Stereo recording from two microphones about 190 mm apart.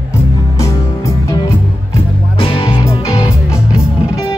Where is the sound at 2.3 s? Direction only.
30° left (ahead or behind).